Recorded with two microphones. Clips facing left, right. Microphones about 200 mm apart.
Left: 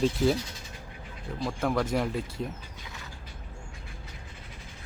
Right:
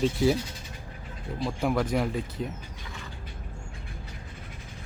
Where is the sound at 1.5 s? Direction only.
5° right (ahead or behind).